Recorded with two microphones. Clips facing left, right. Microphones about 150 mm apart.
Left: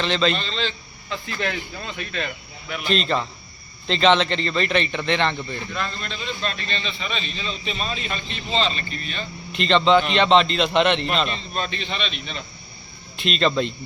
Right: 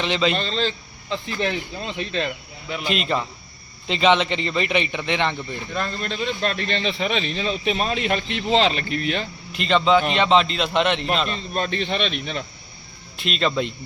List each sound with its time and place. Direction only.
0.0 s a man's voice: 10° right (ahead or behind)
0.3 s a man's voice: 40° right (ahead or behind)
1.1 s speech: 20° right (ahead or behind)
2.8 s a man's voice: 10° right (ahead or behind)
5.7 s a man's voice: 45° right (ahead or behind); by 9.2 s 70° right (ahead or behind)
9.5 s a man's voice: 5° right (ahead or behind)
11.5 s speech: 50° right (ahead or behind)
13.1 s a man's voice: 5° right (ahead or behind)